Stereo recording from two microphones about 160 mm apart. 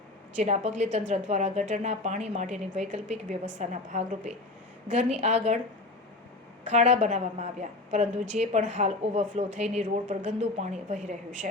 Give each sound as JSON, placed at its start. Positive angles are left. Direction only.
{"t": 0.3, "sound": "a woman's voice", "side_deg": -45}
{"t": 6.7, "sound": "a woman's voice", "side_deg": -45}